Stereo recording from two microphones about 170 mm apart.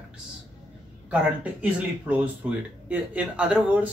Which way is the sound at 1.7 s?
10° right (ahead or behind).